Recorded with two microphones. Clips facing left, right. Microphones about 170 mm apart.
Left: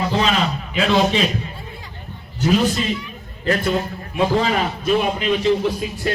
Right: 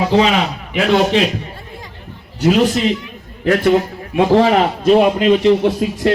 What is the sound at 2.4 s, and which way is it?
A man's voice, 75° right (ahead or behind).